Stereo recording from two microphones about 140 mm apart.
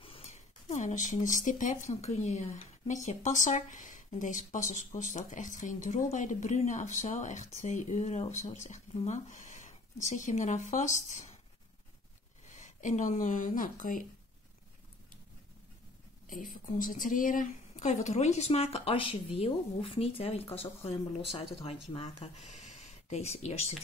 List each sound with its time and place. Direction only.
0.0 s speech: 45° left (ahead or behind)
8.9 s a sound: 55° left (ahead or behind)
10.0 s speech: 60° left (ahead or behind)
12.5 s speech: 60° left (ahead or behind)
16.3 s speech: 75° left (ahead or behind); by 23.6 s 50° left (ahead or behind)